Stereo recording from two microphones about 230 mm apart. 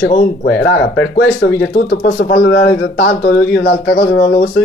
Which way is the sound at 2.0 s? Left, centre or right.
Left.